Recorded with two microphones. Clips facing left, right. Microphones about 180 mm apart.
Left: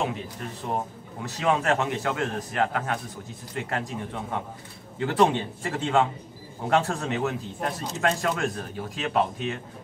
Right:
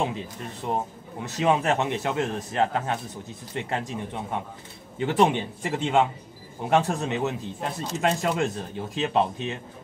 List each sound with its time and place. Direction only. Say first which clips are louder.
0.6 s speech: right 2 dB; 20° right (ahead or behind)